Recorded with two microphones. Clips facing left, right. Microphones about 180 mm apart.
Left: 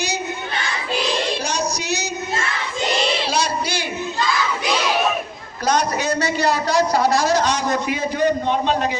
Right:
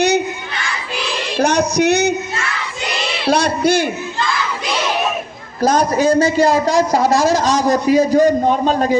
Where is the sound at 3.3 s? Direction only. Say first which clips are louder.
Right 8 dB; 55° right (ahead or behind).